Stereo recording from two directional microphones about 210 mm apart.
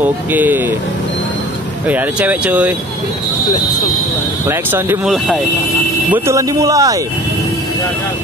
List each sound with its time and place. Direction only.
0.0 s speech: 10° right (ahead or behind)
1.9 s speech: 5° right (ahead or behind)
4.5 s speech: 10° right (ahead or behind)